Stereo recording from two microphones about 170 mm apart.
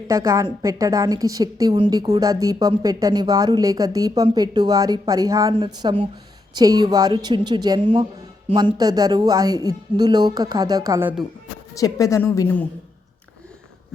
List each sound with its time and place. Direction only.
0.1 s speech: 20° right (ahead or behind)
11.7 s a woman's voice: 20° left (ahead or behind)